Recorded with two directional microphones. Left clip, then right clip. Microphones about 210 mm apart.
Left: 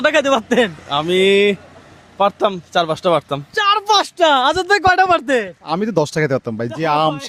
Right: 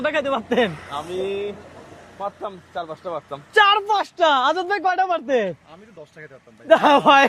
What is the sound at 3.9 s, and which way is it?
Speech, 30° left (ahead or behind).